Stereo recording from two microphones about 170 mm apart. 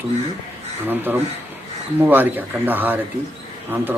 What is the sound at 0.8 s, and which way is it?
Speech, 10° right (ahead or behind).